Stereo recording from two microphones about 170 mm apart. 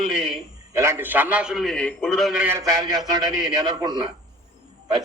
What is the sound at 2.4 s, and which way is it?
A man's voice, 15° right (ahead or behind).